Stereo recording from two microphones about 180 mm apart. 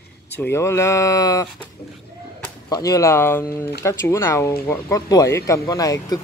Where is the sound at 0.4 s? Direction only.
15° left (ahead or behind).